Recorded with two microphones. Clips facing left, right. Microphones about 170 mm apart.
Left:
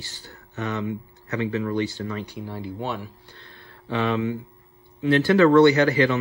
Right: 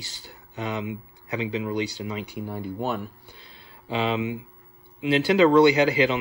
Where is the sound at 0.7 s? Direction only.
15° right (ahead or behind).